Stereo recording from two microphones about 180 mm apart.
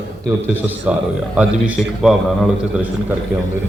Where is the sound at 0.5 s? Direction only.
10° right (ahead or behind).